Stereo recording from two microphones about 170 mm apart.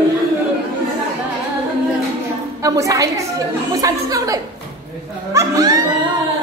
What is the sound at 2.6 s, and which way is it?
A woman's voice, 20° right (ahead or behind).